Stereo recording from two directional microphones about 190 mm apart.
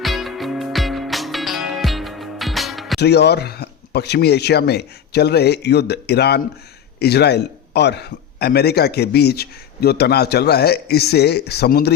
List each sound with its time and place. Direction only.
0.0 s music: centre (ahead or behind)
3.0 s a man's voice: 60° left (ahead or behind)